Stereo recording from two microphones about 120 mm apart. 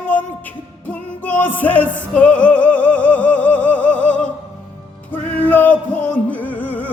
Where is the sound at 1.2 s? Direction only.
15° left (ahead or behind).